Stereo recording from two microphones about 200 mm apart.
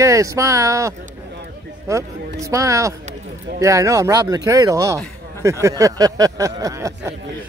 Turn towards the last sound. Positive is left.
turn(degrees=-15)  # may be behind; listen again after turning